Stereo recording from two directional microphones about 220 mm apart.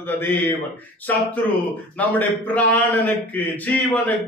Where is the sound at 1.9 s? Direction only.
5° left (ahead or behind).